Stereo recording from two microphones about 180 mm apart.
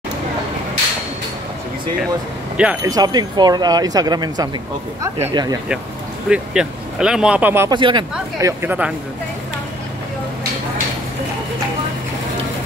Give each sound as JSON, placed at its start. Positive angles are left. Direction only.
{"t": 2.5, "sound": "speech", "side_deg": -5}
{"t": 2.8, "sound": "speech", "side_deg": -20}
{"t": 6.2, "sound": "speech", "side_deg": -5}
{"t": 7.7, "sound": "speech", "side_deg": -25}